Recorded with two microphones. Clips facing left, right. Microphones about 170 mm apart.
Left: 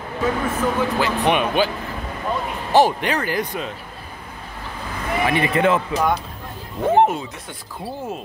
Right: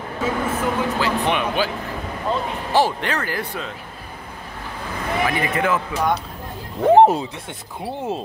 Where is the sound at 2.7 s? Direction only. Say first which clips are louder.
Left 3 dB; 15° left (ahead or behind).